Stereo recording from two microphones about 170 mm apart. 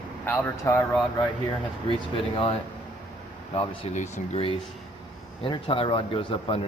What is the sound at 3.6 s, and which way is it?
Speech, 40° left (ahead or behind).